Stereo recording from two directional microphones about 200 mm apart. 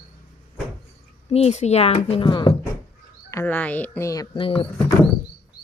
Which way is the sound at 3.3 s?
10° left (ahead or behind).